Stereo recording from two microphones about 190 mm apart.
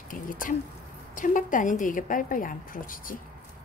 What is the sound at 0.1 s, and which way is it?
A woman's voice, 45° left (ahead or behind).